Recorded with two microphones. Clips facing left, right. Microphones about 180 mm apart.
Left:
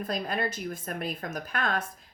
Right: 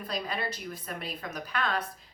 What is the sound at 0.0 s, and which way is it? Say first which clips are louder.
A woman's voice: left 4 dB; 50° left (ahead or behind).